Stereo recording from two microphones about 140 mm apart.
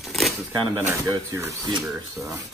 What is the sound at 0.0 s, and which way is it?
Shuffling cards, centre (ahead or behind).